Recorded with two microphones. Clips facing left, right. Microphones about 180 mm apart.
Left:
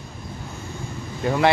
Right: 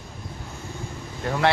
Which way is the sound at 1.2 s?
10° left (ahead or behind).